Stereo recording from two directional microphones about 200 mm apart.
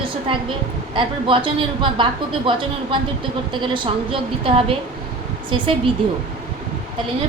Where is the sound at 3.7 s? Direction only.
25° right (ahead or behind).